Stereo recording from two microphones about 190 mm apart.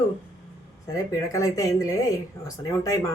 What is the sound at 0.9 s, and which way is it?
A woman's voice, 15° left (ahead or behind).